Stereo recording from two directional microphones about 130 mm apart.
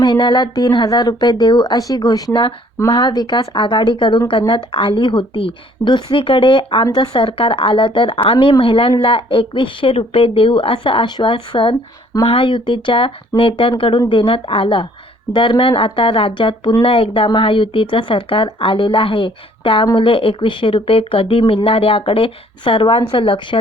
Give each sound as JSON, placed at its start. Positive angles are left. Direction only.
{"t": 0.0, "sound": "speech", "side_deg": 35}